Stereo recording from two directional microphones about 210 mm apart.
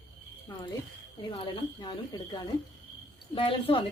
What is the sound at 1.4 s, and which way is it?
Speech, 20° left (ahead or behind).